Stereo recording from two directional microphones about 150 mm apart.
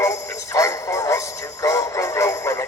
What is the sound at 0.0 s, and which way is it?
Synthetic singing, 20° left (ahead or behind).